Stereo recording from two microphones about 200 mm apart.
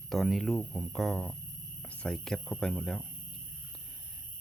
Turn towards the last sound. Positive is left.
turn(degrees=5)  # may be behind; listen again after turning